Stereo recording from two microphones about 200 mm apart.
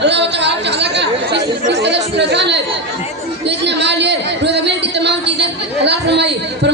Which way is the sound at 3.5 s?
60° right (ahead or behind).